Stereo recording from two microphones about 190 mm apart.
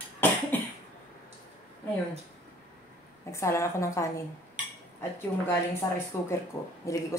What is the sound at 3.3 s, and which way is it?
Speech, 15° left (ahead or behind).